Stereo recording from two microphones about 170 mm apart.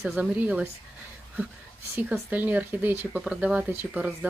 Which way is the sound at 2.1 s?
10° right (ahead or behind).